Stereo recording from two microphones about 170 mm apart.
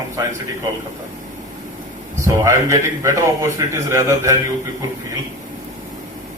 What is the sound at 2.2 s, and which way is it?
A man's voice, 20° right (ahead or behind).